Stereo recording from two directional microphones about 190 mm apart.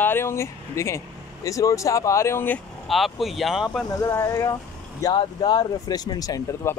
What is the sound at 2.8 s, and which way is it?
Speech, centre (ahead or behind).